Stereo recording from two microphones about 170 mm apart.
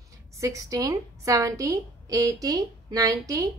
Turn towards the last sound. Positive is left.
turn(degrees=-20)  # may be behind; listen again after turning